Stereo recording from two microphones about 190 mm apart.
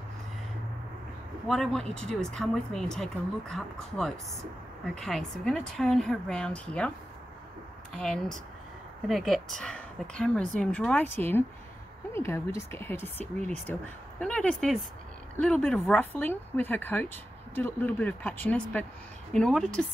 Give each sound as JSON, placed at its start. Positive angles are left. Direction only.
{"t": 1.5, "sound": "speech", "side_deg": 0}
{"t": 7.9, "sound": "speech", "side_deg": 5}